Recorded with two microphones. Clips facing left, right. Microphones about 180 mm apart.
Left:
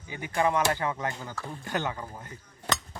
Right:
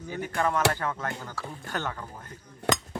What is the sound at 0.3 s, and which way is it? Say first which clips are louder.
Speech: left 1 dB; 15° left (ahead or behind).